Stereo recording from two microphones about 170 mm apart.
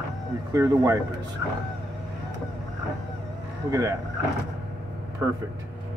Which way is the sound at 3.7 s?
20° right (ahead or behind).